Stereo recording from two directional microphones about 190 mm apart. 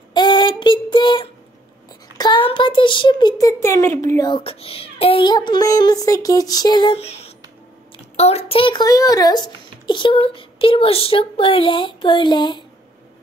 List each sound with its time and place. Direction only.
0.1 s child singing: 25° left (ahead or behind)
2.1 s a child's voice: 25° left (ahead or behind)